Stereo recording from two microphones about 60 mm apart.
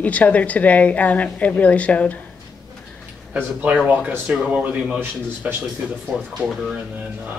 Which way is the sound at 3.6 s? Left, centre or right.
Centre.